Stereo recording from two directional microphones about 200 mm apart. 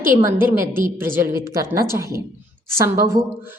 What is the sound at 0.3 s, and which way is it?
A woman's voice, 10° right (ahead or behind).